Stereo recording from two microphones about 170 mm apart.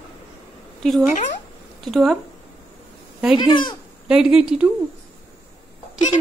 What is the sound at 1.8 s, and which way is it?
Speech, centre (ahead or behind).